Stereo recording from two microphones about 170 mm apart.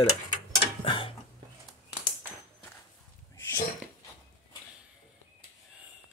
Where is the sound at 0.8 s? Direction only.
30° left (ahead or behind).